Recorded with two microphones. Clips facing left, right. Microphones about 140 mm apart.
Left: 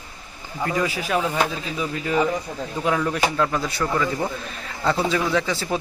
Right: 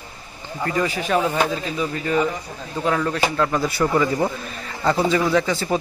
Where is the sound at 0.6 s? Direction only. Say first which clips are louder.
Right 2 dB; 5° left (ahead or behind).